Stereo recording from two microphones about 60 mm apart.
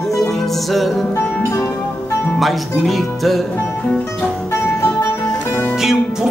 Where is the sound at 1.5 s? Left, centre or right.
Left.